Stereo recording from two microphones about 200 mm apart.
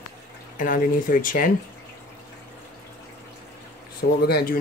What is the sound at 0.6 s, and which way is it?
Speech, 40° left (ahead or behind).